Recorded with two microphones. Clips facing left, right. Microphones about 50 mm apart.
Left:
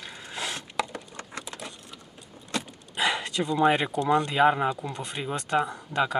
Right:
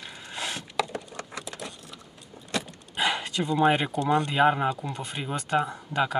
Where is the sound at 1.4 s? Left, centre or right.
Left.